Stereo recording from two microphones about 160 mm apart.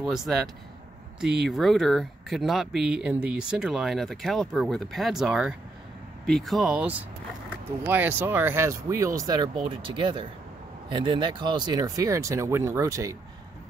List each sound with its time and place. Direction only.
0.1 s speech: centre (ahead or behind)
1.4 s speech: centre (ahead or behind); by 13.1 s 20° right (ahead or behind)